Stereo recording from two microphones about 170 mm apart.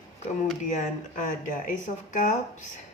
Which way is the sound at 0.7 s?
50° left (ahead or behind).